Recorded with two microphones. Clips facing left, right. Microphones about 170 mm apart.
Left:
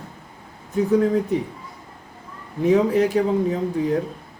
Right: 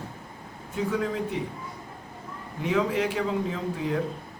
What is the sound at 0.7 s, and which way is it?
Speech, 40° left (ahead or behind).